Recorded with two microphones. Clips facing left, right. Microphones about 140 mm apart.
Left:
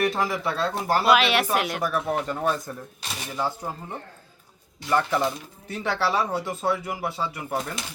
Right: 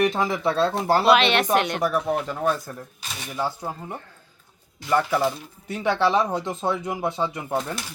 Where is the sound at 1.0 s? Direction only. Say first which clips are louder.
Right 1 dB; 5° left (ahead or behind).